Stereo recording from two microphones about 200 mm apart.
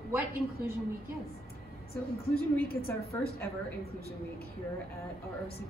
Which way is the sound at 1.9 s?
50° left (ahead or behind).